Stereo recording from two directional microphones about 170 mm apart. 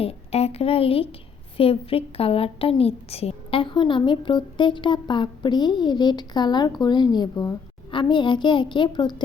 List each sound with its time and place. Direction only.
0.0 s a woman's voice: 35° left (ahead or behind)